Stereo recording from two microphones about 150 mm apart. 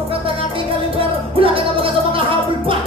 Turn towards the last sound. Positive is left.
turn(degrees=-35)  # may be behind; listen again after turning